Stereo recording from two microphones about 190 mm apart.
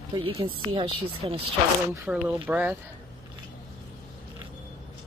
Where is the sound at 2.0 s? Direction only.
10° right (ahead or behind).